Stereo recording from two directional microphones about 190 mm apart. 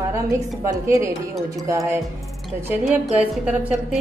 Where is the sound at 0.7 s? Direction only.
15° right (ahead or behind).